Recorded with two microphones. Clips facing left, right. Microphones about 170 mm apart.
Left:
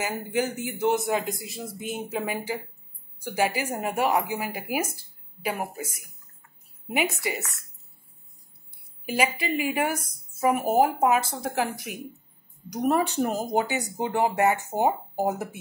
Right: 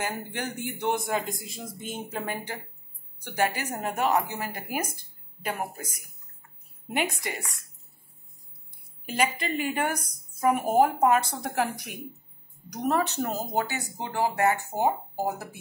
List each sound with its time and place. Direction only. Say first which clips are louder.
0.0 s a man's voice: left 5 dB; 5° left (ahead or behind)
6.9 s a man's voice: left 3 dB; 5° left (ahead or behind)
9.0 s a man's voice: left 2 dB; 5° left (ahead or behind)
12.6 s speech: left 3 dB; 15° left (ahead or behind)